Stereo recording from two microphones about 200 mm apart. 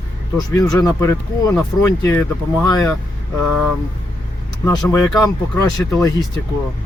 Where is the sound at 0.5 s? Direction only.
15° left (ahead or behind).